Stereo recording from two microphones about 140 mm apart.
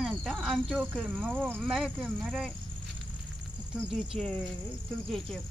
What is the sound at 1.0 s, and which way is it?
Speech, 15° right (ahead or behind).